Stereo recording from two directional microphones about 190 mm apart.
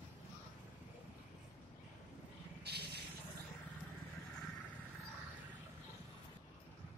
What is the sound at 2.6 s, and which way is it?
Spray, 60° right (ahead or behind).